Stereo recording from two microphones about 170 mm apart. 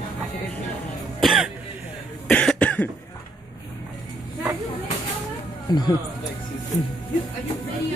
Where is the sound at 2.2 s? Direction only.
10° left (ahead or behind).